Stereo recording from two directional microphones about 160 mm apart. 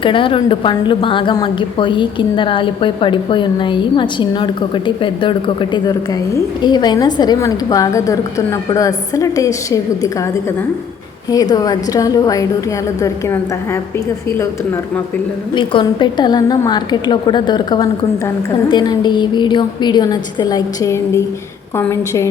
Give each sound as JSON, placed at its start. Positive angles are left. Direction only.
{"t": 0.0, "sound": "a woman's voice", "side_deg": 30}
{"t": 11.3, "sound": "a woman's voice", "side_deg": 25}
{"t": 15.5, "sound": "a woman's voice", "side_deg": 30}